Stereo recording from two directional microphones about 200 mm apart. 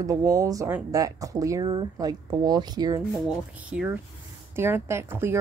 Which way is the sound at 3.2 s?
5° right (ahead or behind).